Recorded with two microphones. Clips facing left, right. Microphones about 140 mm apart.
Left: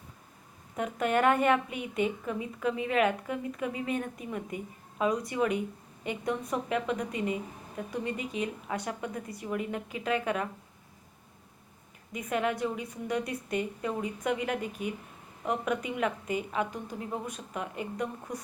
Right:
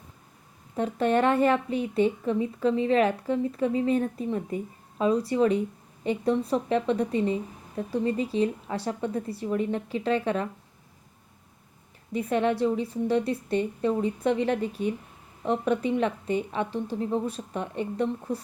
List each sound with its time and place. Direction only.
0.8 s a woman's voice: 30° right (ahead or behind)
12.1 s a woman's voice: 30° right (ahead or behind)